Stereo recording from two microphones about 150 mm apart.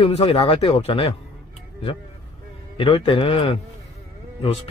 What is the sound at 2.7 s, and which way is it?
A man's voice, 35° left (ahead or behind).